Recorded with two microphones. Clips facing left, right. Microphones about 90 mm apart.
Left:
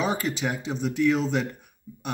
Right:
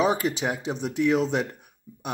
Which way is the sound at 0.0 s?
20° right (ahead or behind).